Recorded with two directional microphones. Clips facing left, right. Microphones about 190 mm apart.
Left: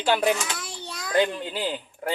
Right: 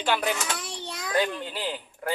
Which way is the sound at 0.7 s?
20° right (ahead or behind).